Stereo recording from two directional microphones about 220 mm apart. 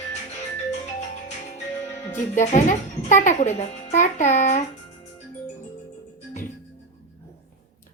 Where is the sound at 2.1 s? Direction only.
35° left (ahead or behind).